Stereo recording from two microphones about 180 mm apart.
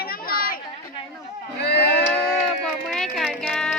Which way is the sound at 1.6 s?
65° left (ahead or behind).